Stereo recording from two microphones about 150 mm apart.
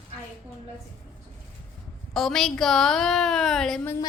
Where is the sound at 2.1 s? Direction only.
5° left (ahead or behind).